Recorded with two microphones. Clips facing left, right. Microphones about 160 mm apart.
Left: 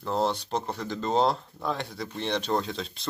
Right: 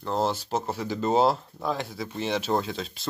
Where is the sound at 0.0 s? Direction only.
Centre (ahead or behind).